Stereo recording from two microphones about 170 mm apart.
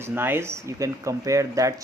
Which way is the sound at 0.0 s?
10° right (ahead or behind).